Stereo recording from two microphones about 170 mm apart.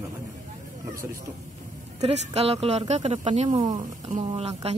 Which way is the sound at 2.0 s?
40° right (ahead or behind).